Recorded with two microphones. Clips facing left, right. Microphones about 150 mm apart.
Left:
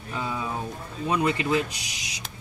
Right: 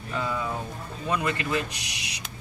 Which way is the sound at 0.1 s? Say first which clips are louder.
Right 1 dB; 15° left (ahead or behind).